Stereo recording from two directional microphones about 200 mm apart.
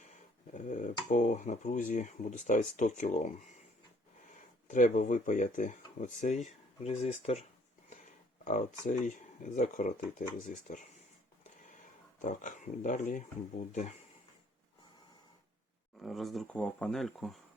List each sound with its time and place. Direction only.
0.5 s speech: 40° left (ahead or behind)
4.7 s speech: 40° left (ahead or behind)
8.4 s speech: 40° left (ahead or behind)
12.2 s speech: 40° left (ahead or behind)
16.0 s speech: centre (ahead or behind)